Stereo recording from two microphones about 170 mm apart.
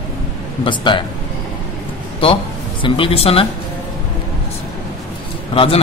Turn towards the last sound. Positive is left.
turn(degrees=35)  # may be behind; listen again after turning